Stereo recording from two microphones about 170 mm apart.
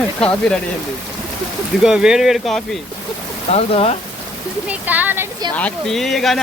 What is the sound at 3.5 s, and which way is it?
Speech, 40° left (ahead or behind).